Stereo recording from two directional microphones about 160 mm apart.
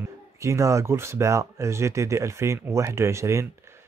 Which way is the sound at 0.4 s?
20° right (ahead or behind).